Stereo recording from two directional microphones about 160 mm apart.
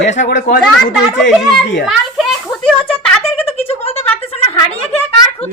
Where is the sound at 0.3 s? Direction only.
65° left (ahead or behind).